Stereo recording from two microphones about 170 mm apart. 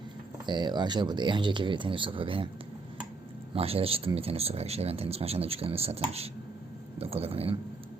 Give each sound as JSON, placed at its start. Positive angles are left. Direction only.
{"t": 0.4, "sound": "speech", "side_deg": -25}
{"t": 3.5, "sound": "speech", "side_deg": -35}